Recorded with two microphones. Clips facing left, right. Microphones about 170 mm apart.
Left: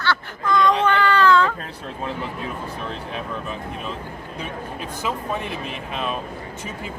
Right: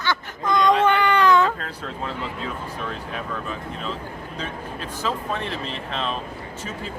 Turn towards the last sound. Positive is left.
turn(degrees=10)  # may be behind; listen again after turning